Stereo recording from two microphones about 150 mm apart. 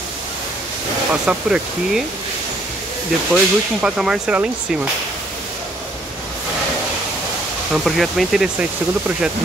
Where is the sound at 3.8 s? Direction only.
5° right (ahead or behind).